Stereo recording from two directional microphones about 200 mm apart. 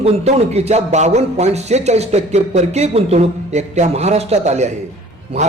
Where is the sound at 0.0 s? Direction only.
30° right (ahead or behind).